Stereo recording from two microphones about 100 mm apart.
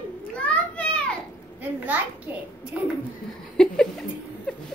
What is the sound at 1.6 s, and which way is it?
A child's voice, 15° right (ahead or behind).